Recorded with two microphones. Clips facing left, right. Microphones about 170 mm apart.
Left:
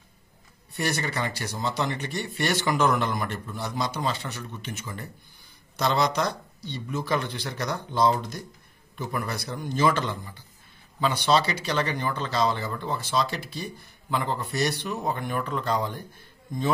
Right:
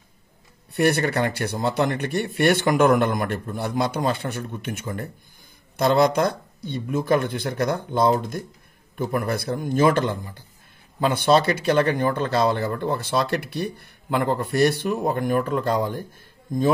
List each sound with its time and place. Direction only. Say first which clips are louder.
0.7 s speech: right 8 dB; 60° right (ahead or behind)